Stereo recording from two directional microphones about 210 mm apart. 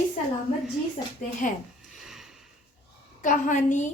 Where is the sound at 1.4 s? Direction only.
40° left (ahead or behind).